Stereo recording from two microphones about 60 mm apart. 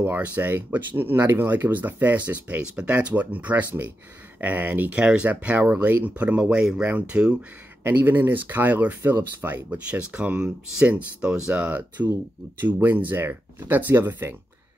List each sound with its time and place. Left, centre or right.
0.0 s speech: right
5.0 s speech: centre
5.3 s speech: right
8.0 s speech: right
10.1 s speech: centre
12.1 s speech: right